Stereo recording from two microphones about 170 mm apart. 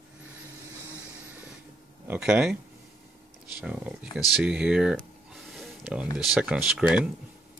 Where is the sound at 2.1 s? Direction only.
10° right (ahead or behind).